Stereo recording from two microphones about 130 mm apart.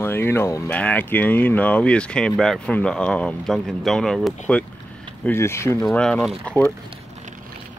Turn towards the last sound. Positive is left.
turn(degrees=10)  # may be behind; listen again after turning